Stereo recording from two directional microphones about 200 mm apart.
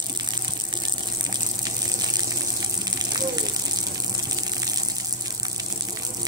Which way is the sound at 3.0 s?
20° right (ahead or behind).